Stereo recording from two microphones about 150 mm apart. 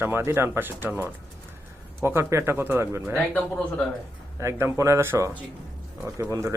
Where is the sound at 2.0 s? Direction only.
15° right (ahead or behind).